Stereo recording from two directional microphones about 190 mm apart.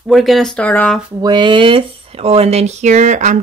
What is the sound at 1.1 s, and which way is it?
Speech, 20° right (ahead or behind).